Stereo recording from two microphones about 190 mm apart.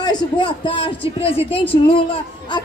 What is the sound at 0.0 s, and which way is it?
Speech, 25° left (ahead or behind).